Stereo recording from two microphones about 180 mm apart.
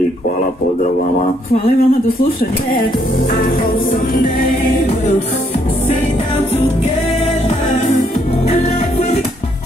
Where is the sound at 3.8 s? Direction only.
50° left (ahead or behind).